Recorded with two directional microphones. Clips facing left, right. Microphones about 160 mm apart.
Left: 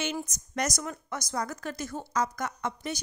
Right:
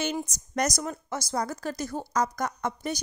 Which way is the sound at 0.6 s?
40° right (ahead or behind).